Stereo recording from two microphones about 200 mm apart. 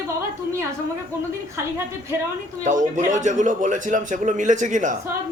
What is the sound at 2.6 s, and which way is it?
A man's voice, 40° right (ahead or behind).